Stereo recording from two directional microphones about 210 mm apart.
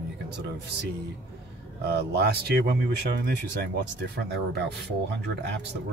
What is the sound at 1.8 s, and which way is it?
Speech, 50° right (ahead or behind).